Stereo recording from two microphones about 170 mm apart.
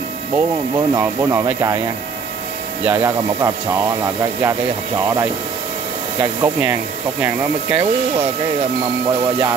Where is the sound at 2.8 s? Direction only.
15° right (ahead or behind).